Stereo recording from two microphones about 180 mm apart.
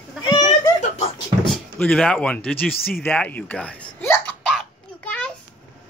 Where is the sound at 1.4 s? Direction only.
5° left (ahead or behind).